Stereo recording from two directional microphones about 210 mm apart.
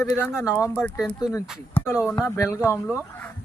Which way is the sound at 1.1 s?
15° left (ahead or behind).